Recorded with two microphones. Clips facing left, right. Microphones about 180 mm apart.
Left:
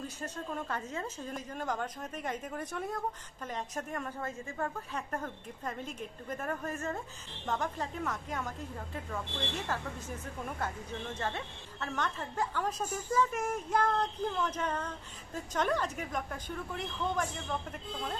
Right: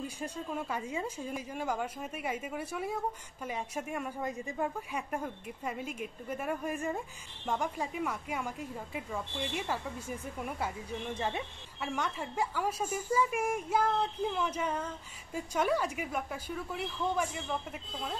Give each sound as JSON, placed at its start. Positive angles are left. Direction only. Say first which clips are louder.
{"t": 0.0, "sound": "speech", "louder": "right 2 dB", "side_deg": -10}